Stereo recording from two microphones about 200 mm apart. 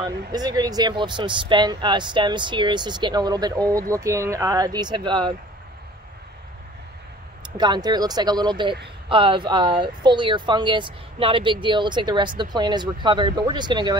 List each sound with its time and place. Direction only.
0.0 s speech: 20° right (ahead or behind)
7.4 s speech: 20° right (ahead or behind)